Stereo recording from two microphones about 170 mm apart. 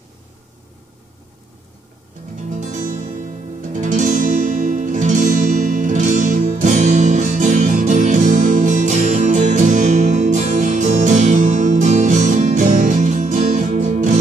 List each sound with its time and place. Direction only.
2.5 s music: 50° right (ahead or behind)